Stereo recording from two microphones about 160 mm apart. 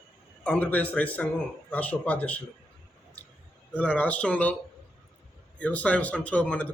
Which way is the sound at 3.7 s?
10° left (ahead or behind).